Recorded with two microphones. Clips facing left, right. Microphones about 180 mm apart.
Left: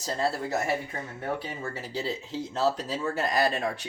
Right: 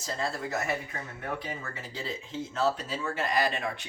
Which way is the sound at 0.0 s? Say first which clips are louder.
Left 4 dB; 35° left (ahead or behind).